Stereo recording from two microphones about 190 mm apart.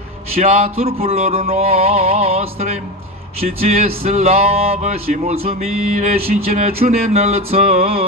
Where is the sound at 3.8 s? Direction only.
30° right (ahead or behind).